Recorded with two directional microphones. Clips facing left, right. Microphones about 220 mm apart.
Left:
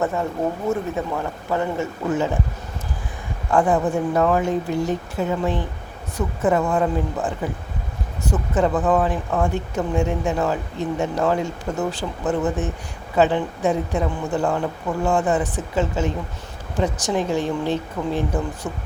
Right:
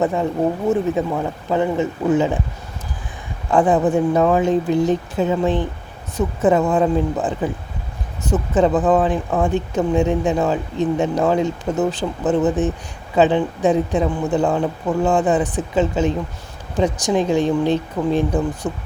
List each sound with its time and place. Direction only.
0.0 s speech: 15° right (ahead or behind)
3.5 s speech: 20° right (ahead or behind)